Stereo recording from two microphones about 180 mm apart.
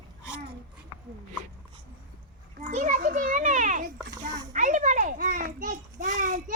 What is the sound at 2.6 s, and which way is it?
Children playing, 45° right (ahead or behind).